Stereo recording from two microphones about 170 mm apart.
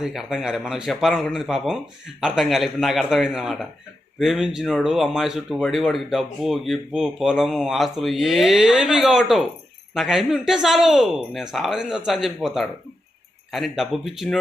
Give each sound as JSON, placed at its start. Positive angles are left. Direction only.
{"t": 0.0, "sound": "speech", "side_deg": -5}